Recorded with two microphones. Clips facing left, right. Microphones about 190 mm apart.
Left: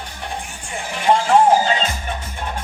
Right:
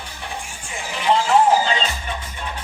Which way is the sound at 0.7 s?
55° left (ahead or behind).